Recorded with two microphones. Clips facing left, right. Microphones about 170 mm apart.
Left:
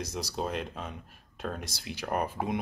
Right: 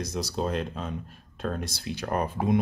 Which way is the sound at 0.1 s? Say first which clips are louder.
Right 6 dB; 10° left (ahead or behind).